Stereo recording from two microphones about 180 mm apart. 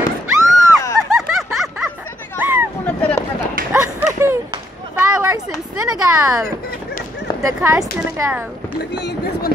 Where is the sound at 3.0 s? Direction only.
5° left (ahead or behind).